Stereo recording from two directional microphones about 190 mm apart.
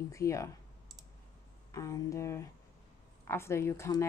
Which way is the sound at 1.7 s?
15° left (ahead or behind).